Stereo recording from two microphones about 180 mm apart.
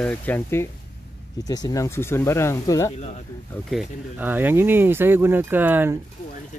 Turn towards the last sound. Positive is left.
turn(degrees=-10)  # may be behind; listen again after turning